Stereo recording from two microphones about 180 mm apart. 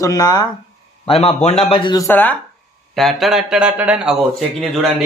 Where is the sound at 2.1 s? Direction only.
10° left (ahead or behind).